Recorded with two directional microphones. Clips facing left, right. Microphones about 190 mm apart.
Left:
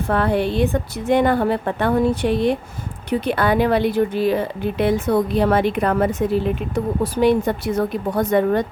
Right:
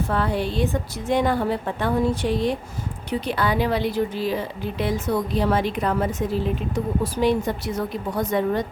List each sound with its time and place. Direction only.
0.1 s speech: 60° left (ahead or behind)